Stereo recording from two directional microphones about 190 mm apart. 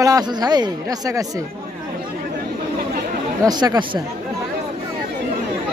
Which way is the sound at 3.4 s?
20° right (ahead or behind).